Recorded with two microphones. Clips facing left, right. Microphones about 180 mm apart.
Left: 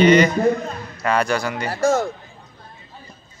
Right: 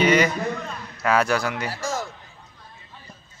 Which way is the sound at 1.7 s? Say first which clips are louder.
Left 10 dB; 55° left (ahead or behind).